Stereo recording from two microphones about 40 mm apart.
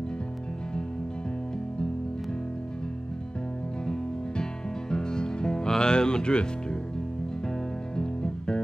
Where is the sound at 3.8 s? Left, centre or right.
Centre.